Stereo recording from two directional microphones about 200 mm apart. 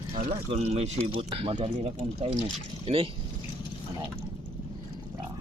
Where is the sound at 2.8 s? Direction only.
30° right (ahead or behind).